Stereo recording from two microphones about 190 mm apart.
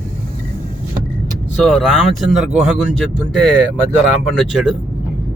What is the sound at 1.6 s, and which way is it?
Speech, centre (ahead or behind).